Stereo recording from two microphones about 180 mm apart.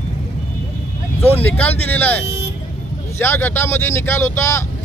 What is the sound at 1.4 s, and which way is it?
Speech, 10° left (ahead or behind).